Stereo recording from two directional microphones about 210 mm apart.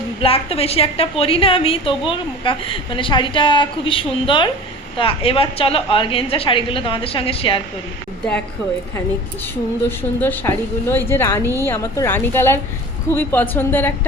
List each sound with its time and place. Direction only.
0.2 s a woman's voice: 25° left (ahead or behind)
10.2 s speech: 10° left (ahead or behind)